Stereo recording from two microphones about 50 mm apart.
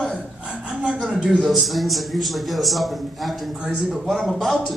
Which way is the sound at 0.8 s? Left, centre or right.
Right.